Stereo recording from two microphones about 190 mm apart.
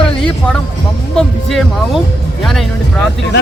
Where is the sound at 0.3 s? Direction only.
5° left (ahead or behind).